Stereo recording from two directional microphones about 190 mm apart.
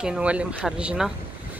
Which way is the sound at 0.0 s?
5° right (ahead or behind).